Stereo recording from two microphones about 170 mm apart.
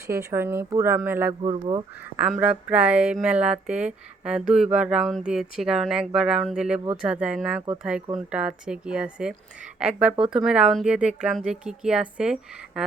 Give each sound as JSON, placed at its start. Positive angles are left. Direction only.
{"t": 0.1, "sound": "speech", "side_deg": -15}
{"t": 1.5, "sound": "speech", "side_deg": -30}
{"t": 2.1, "sound": "speech", "side_deg": -5}